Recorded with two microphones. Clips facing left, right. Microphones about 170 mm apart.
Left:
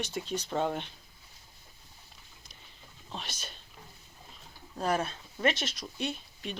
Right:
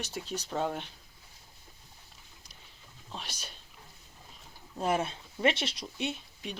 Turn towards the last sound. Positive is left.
turn(degrees=-20)  # may be behind; listen again after turning